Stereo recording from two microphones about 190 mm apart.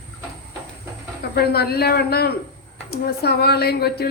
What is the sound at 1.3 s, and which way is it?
Speech, 55° left (ahead or behind).